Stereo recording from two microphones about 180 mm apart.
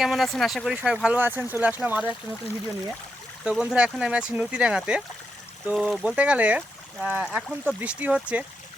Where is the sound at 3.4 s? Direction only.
5° right (ahead or behind).